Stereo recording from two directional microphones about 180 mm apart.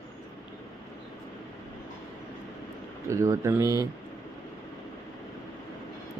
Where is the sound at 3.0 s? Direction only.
15° right (ahead or behind).